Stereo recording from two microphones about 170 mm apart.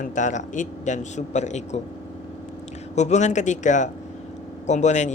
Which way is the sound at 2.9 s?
45° left (ahead or behind).